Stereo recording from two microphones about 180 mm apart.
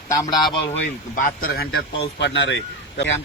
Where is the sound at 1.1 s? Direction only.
50° left (ahead or behind).